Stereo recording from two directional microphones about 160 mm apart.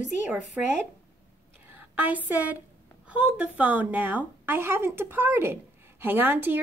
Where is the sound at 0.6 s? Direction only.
10° right (ahead or behind).